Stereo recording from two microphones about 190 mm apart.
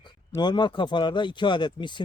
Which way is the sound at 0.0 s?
25° left (ahead or behind).